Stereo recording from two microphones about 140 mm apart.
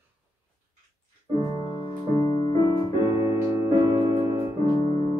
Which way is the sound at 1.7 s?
30° left (ahead or behind).